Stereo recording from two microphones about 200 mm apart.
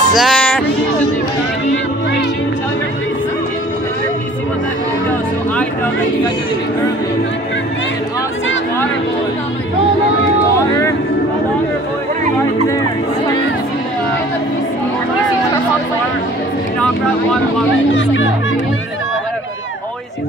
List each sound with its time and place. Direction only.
0.1 s music: centre (ahead or behind)
17.9 s speech: 65° left (ahead or behind)